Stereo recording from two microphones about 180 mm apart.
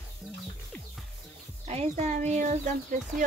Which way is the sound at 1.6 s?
40° right (ahead or behind).